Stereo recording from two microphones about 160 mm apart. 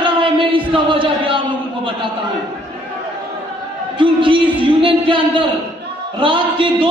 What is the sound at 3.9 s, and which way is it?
Speech, 30° right (ahead or behind).